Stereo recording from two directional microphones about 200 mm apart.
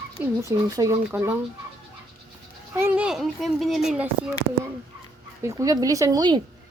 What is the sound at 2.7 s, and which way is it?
Speech, 10° right (ahead or behind).